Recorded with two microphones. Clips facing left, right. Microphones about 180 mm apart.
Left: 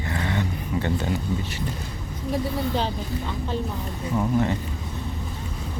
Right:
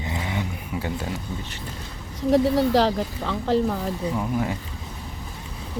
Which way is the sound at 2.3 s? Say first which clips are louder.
Right 8 dB; 85° right.